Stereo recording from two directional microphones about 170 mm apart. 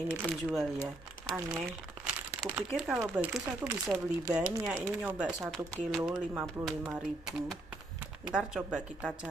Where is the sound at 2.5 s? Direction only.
5° right (ahead or behind).